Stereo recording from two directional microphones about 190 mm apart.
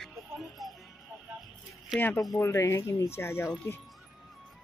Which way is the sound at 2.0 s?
5° left (ahead or behind).